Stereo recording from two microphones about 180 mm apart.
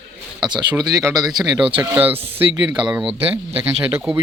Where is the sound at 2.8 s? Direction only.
5° right (ahead or behind).